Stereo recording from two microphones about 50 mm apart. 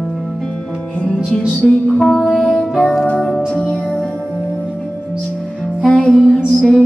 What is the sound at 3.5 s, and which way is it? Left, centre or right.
Music, left.